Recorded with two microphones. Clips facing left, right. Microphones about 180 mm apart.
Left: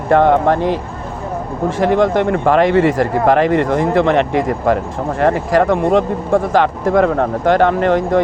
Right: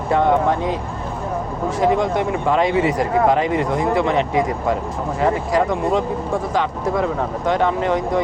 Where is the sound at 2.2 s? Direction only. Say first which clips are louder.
Left 5 dB; 55° left (ahead or behind).